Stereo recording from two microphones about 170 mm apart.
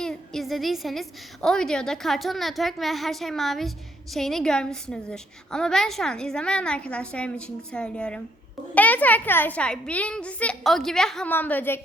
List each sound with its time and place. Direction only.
0.0 s a woman's voice: centre (ahead or behind)